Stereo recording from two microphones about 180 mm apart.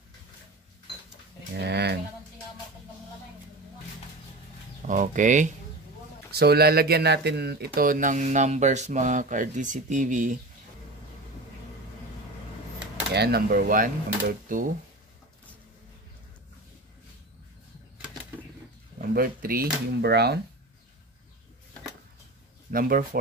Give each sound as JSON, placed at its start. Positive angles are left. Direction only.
{"t": 1.5, "sound": "a sound", "side_deg": -65}
{"t": 4.8, "sound": "speech", "side_deg": -45}
{"t": 6.3, "sound": "speech", "side_deg": -60}
{"t": 13.1, "sound": "speech", "side_deg": -65}
{"t": 18.9, "sound": "speech", "side_deg": -55}
{"t": 22.7, "sound": "speech", "side_deg": -55}